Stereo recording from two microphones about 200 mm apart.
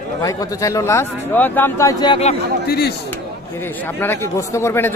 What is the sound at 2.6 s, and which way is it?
Speech, 50° left (ahead or behind).